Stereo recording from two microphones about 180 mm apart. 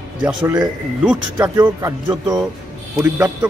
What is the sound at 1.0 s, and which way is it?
Speech, 5° right (ahead or behind).